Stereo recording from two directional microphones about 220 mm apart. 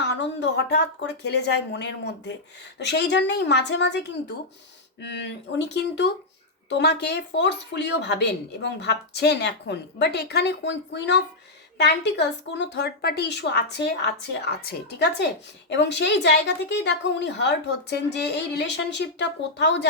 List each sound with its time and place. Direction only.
0.1 s speech: 50° left (ahead or behind)